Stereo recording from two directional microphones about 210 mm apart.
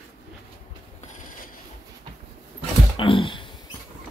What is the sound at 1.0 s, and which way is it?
Train, 40° left (ahead or behind).